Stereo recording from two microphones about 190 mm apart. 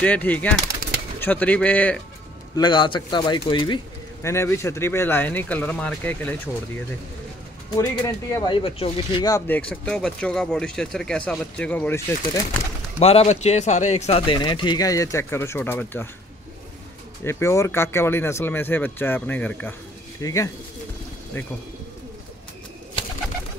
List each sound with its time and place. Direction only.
0.0 s speech: 10° left (ahead or behind)
2.5 s speech: 25° left (ahead or behind); by 6.5 s 10° left (ahead or behind)
7.7 s speech: 20° left (ahead or behind)
9.3 s speech: 10° left (ahead or behind)
13.0 s speech: 30° left (ahead or behind); by 16.1 s 10° left (ahead or behind)
17.2 s speech: 15° left (ahead or behind)
23.0 s pigeon: 25° left (ahead or behind)